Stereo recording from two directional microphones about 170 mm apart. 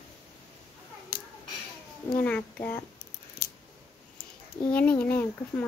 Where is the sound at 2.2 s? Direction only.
10° left (ahead or behind).